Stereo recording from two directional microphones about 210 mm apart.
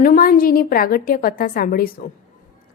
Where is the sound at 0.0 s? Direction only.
40° left (ahead or behind).